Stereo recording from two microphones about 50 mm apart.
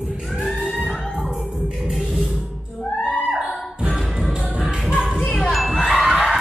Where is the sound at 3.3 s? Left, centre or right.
Centre.